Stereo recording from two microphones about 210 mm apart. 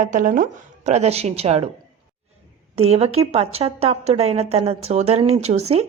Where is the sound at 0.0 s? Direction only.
40° right (ahead or behind).